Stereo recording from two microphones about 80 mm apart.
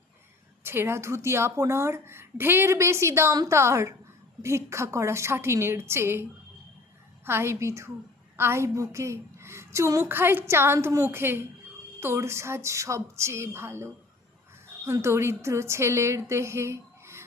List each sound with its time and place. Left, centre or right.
0.6 s a woman's voice: right
7.3 s a woman's voice: right
15.0 s a woman's voice: right